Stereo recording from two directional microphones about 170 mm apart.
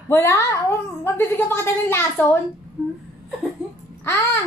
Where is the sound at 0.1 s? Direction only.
15° left (ahead or behind).